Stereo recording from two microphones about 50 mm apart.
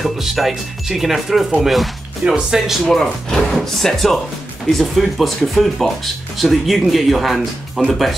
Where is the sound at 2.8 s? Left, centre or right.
Centre.